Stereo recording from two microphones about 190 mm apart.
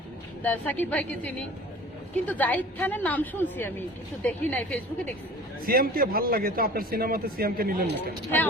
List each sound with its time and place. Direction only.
0.4 s a woman's voice: 10° left (ahead or behind)
5.6 s a man's voice: 50° right (ahead or behind)